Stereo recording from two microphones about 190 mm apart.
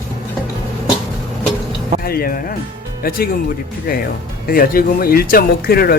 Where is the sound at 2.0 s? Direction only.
50° left (ahead or behind).